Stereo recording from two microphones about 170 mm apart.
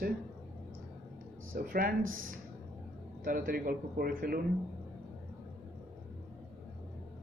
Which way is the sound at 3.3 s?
60° right (ahead or behind).